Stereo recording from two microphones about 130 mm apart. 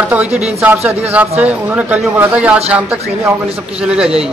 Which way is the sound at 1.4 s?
10° right (ahead or behind).